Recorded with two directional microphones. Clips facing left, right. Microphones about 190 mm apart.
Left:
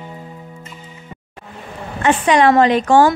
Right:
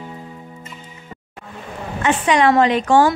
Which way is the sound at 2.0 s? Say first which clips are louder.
Left 3 dB; 40° left (ahead or behind).